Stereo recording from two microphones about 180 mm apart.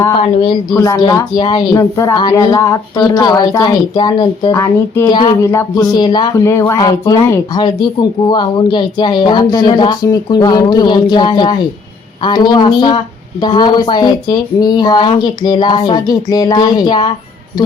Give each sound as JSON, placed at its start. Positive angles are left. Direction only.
{"t": 0.1, "sound": "speech", "side_deg": 25}